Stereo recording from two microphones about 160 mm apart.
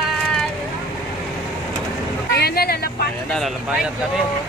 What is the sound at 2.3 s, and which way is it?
Vehicle, 80° left.